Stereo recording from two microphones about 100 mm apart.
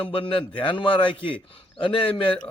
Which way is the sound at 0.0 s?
60° left (ahead or behind).